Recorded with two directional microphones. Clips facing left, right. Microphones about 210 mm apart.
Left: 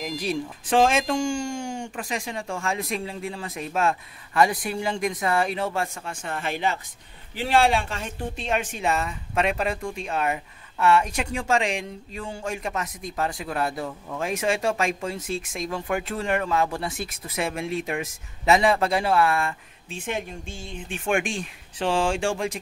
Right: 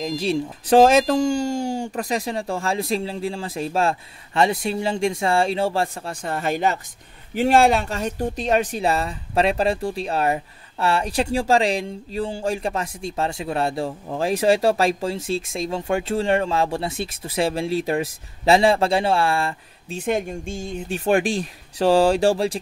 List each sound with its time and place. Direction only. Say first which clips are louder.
0.0 s speech: right 5 dB; 30° right (ahead or behind)
0.7 s speech: right 6 dB; 40° right (ahead or behind)